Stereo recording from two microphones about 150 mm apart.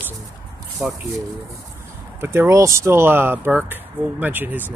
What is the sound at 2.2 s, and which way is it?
Speech, 15° right (ahead or behind).